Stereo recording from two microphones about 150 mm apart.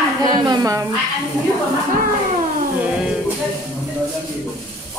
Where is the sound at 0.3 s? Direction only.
25° right (ahead or behind).